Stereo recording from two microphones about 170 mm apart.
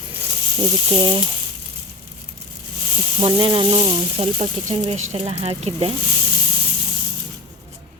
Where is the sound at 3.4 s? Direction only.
30° right (ahead or behind).